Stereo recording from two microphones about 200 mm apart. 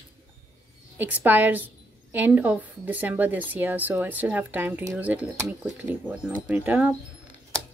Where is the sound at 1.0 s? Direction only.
10° right (ahead or behind).